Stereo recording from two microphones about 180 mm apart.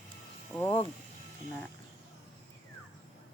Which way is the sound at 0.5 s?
10° left (ahead or behind).